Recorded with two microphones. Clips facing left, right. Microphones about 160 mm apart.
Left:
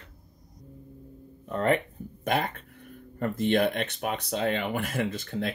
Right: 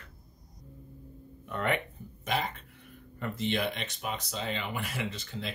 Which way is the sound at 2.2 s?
55° left (ahead or behind).